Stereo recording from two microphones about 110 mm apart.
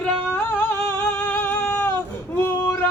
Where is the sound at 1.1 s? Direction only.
20° left (ahead or behind).